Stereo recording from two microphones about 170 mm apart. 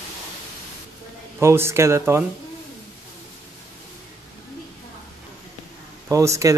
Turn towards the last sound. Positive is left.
turn(degrees=-20)  # may be behind; listen again after turning